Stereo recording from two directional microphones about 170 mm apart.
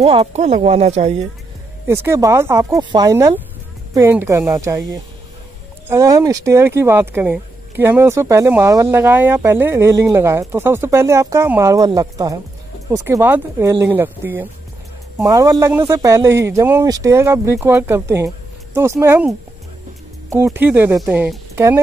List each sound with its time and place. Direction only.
0.0 s speech: 35° right (ahead or behind)
1.9 s speech: 15° right (ahead or behind)
5.9 s speech: 20° right (ahead or behind)
20.4 s speech: 10° right (ahead or behind)